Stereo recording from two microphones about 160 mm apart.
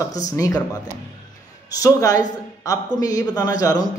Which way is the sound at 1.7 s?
20° left (ahead or behind).